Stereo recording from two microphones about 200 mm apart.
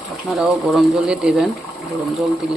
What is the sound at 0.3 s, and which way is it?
Speech, centre (ahead or behind).